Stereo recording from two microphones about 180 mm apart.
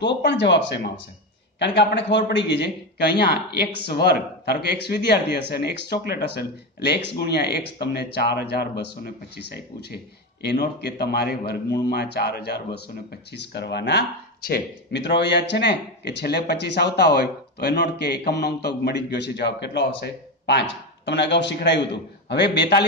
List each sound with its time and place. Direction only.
0.0 s a man's voice: 70° left (ahead or behind)